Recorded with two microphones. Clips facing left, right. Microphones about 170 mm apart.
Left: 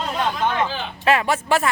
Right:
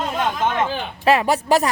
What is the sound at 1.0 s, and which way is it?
Speech, 35° right (ahead or behind).